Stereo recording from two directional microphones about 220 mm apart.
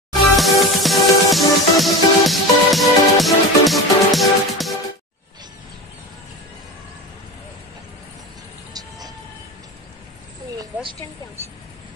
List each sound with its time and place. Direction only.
0.4 s music: centre (ahead or behind)
8.7 s vehicle: 15° right (ahead or behind)
10.6 s a sound: 20° right (ahead or behind)